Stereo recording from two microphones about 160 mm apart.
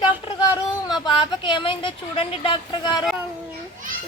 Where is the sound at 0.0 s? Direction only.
25° left (ahead or behind).